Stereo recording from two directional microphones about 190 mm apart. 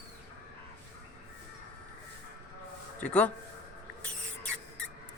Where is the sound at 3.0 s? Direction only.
5° left (ahead or behind).